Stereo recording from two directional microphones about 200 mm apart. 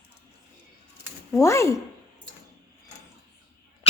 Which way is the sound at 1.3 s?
15° left (ahead or behind).